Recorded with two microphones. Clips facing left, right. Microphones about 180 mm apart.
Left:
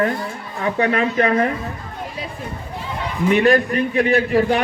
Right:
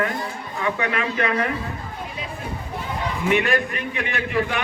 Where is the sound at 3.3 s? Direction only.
35° left (ahead or behind).